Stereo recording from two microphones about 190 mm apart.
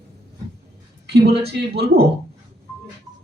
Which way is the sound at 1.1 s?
60° right (ahead or behind).